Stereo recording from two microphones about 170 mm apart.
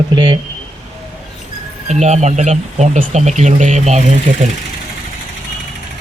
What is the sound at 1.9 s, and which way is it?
Speech, 45° right (ahead or behind).